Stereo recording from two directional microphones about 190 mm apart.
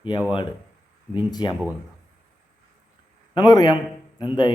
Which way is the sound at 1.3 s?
20° left (ahead or behind).